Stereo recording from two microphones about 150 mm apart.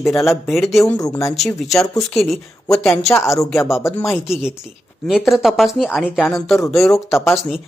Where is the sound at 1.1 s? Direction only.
15° left (ahead or behind).